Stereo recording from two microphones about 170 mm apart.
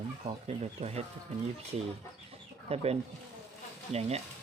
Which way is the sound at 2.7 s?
35° right (ahead or behind).